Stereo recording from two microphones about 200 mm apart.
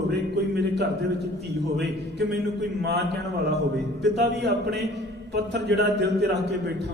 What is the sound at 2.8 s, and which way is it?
A man's voice, 60° right (ahead or behind).